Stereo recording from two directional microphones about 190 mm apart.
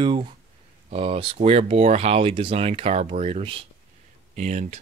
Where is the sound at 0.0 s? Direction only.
25° right (ahead or behind).